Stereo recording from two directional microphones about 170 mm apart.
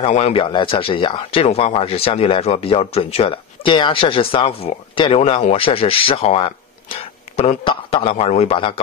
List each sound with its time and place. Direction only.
0.1 s speech: 35° left (ahead or behind)